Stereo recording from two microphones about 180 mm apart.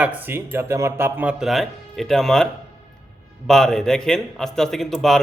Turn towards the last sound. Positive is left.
turn(degrees=0)  # may be behind; listen again after turning